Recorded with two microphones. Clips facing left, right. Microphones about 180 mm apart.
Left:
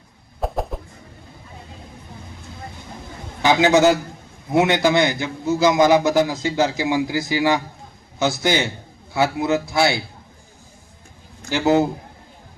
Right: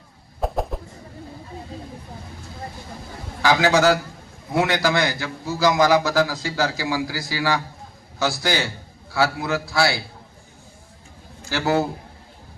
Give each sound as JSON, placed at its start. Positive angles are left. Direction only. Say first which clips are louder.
{"t": 0.4, "sound": "bird", "louder": "even", "side_deg": 0}
{"t": 3.4, "sound": "a man's voice", "louder": "left 3 dB", "side_deg": 20}
{"t": 11.4, "sound": "a man's voice", "louder": "left 4 dB", "side_deg": 20}